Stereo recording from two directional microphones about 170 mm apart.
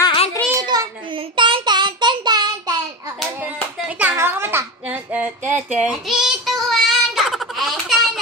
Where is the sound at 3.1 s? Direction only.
10° right (ahead or behind).